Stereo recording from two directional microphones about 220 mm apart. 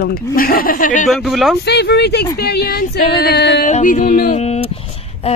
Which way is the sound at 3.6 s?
35° left (ahead or behind).